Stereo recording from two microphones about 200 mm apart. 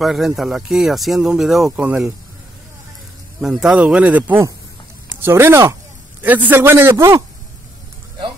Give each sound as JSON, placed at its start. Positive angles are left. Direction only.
{"t": 0.0, "sound": "speech", "side_deg": 0}
{"t": 3.3, "sound": "a man's voice", "side_deg": 0}